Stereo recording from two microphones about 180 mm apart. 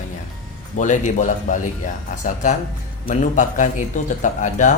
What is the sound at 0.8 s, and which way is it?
Speech, 45° left (ahead or behind).